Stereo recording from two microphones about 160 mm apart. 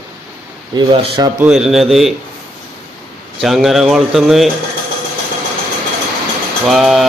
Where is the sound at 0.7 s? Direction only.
30° right (ahead or behind).